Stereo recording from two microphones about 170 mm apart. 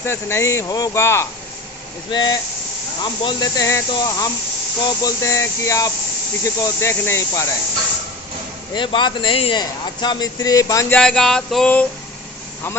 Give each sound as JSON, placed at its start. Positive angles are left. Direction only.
{"t": 0.0, "sound": "speech", "side_deg": 15}
{"t": 2.0, "sound": "speech", "side_deg": 25}
{"t": 8.7, "sound": "speech", "side_deg": 30}
{"t": 10.9, "sound": "a sound", "side_deg": 5}